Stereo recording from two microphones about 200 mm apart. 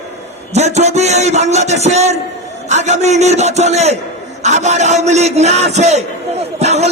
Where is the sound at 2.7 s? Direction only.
35° right (ahead or behind).